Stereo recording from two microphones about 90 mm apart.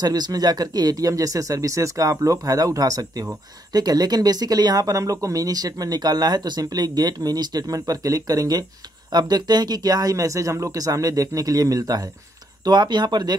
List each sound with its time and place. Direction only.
0.0 s speech: 45° right (ahead or behind)